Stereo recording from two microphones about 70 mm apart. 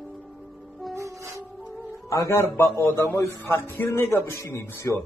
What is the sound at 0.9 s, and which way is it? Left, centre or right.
Music, right.